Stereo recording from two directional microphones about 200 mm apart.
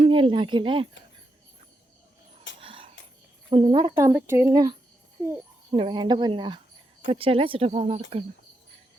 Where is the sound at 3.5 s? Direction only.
25° right (ahead or behind).